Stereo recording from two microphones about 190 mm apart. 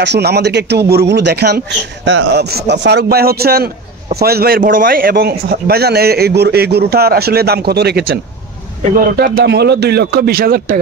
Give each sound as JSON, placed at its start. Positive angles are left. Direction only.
{"t": 0.0, "sound": "a man's voice", "side_deg": -60}